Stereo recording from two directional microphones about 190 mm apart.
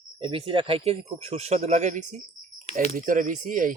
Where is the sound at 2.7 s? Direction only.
35° left (ahead or behind).